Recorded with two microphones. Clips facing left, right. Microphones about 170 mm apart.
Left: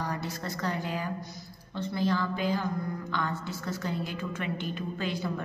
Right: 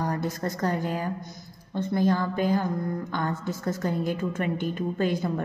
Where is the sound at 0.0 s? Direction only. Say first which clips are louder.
Right 6 dB; 45° right (ahead or behind).